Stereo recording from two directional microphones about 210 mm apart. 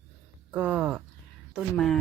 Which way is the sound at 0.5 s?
Centre (ahead or behind).